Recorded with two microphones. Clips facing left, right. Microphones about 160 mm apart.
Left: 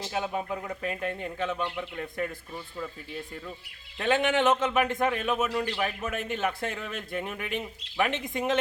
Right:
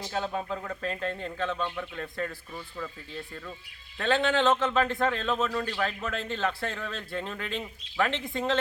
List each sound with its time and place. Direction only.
0.0 s a man's voice: 15° left (ahead or behind)
3.9 s a man's voice: 15° left (ahead or behind)